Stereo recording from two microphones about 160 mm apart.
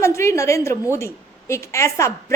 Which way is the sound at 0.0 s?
15° left (ahead or behind).